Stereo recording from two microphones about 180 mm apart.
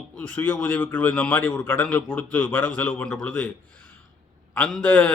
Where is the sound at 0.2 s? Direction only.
10° left (ahead or behind).